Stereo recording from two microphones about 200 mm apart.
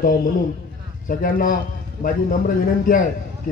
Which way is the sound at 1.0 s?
45° left (ahead or behind).